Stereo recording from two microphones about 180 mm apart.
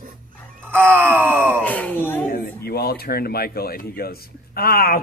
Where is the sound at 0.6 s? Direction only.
10° right (ahead or behind).